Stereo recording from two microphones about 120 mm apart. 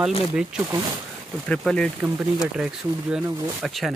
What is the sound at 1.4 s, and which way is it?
Speech, 5° left (ahead or behind).